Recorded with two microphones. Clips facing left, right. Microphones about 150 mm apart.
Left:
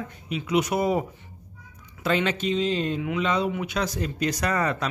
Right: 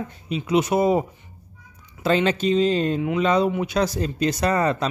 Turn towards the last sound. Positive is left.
turn(degrees=-30)  # may be behind; listen again after turning